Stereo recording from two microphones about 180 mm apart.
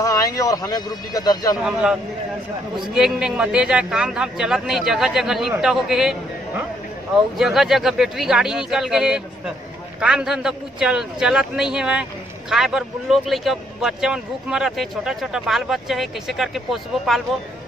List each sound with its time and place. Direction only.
0.0 s a sound: 20° left (ahead or behind)
0.4 s a man's voice: 20° left (ahead or behind)
1.6 s a man's voice: 5° right (ahead or behind)